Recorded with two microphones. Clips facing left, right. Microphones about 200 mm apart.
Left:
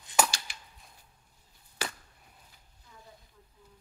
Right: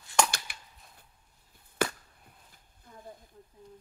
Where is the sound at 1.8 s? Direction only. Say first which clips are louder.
Right 8 dB; 50° right (ahead or behind).